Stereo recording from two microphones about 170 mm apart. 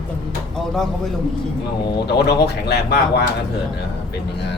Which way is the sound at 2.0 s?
80° left.